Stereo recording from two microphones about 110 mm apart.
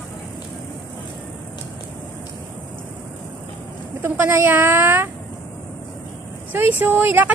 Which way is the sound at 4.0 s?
20° right (ahead or behind).